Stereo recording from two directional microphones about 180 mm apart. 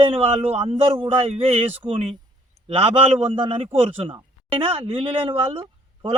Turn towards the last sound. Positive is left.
turn(degrees=-30)  # may be behind; listen again after turning